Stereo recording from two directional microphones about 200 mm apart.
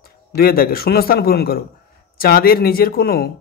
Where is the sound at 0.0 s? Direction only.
50° left (ahead or behind).